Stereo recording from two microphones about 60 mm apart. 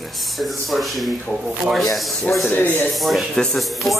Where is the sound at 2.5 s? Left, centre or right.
Left.